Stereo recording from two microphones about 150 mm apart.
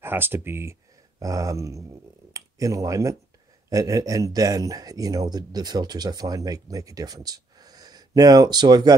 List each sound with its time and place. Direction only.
0.0 s speech: 15° right (ahead or behind)